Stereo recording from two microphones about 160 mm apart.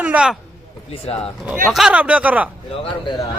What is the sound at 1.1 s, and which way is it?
Speech, 40° left (ahead or behind).